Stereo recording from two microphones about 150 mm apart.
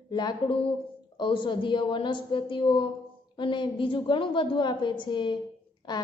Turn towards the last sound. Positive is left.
turn(degrees=30)  # may be behind; listen again after turning